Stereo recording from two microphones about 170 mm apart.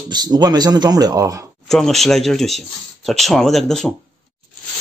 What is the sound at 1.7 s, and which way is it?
A man's voice, centre (ahead or behind).